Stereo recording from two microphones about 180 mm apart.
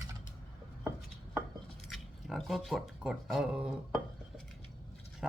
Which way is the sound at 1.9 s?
Centre (ahead or behind).